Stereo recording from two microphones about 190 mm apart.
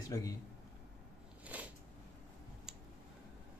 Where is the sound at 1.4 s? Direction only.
10° right (ahead or behind).